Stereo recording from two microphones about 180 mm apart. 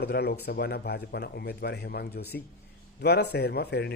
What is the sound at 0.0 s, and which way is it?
A man's voice, 65° left (ahead or behind).